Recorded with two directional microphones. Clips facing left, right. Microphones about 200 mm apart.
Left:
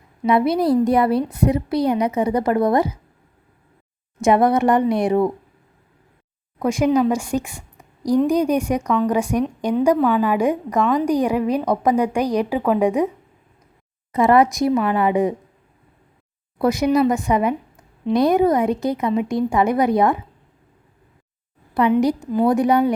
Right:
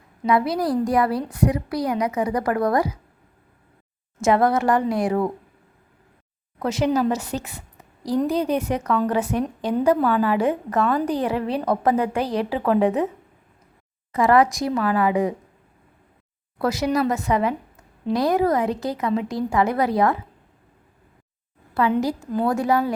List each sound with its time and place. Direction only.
0.3 s a woman's voice: 25° left (ahead or behind)
4.2 s a woman's voice: 20° left (ahead or behind)
6.6 s a woman's voice: 10° left (ahead or behind)
14.1 s a woman's voice: 20° left (ahead or behind)
16.6 s a woman's voice: 20° left (ahead or behind)
21.8 s a woman's voice: 20° left (ahead or behind)